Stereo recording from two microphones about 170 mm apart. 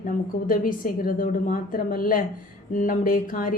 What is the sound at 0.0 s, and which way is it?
A woman's voice, 55° left (ahead or behind).